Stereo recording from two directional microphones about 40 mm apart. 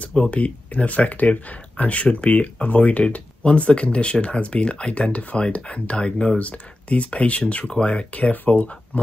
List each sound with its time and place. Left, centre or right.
0.1 s speech: left
7.6 s speech: left